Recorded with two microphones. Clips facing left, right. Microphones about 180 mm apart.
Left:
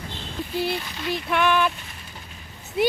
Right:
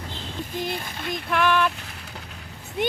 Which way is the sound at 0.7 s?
50° right (ahead or behind).